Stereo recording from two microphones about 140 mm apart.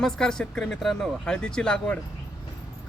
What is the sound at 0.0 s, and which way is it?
Speech, 5° left (ahead or behind).